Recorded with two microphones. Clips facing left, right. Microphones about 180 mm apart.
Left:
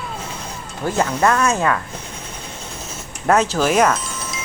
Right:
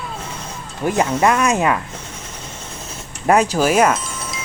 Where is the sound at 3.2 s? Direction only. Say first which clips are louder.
Right 1 dB; 10° right (ahead or behind).